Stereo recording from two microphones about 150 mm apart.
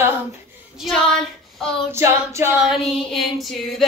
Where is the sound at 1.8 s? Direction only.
15° right (ahead or behind).